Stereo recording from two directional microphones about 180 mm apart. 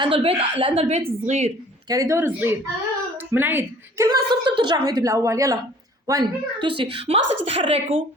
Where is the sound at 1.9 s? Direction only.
15° right (ahead or behind).